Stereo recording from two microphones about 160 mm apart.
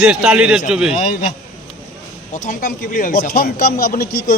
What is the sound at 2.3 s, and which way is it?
Speech, 60° left (ahead or behind).